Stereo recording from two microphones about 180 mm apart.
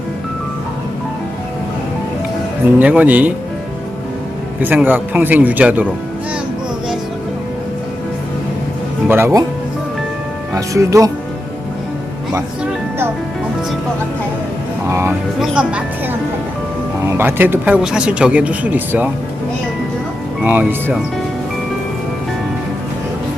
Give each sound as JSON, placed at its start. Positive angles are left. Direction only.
{"t": 2.7, "sound": "speech", "side_deg": -10}
{"t": 4.6, "sound": "speech", "side_deg": -10}
{"t": 9.0, "sound": "speech", "side_deg": -15}
{"t": 10.5, "sound": "speech", "side_deg": -15}
{"t": 14.8, "sound": "speech", "side_deg": -15}
{"t": 15.4, "sound": "speech", "side_deg": -5}
{"t": 17.2, "sound": "speech", "side_deg": -10}
{"t": 20.4, "sound": "speech", "side_deg": -10}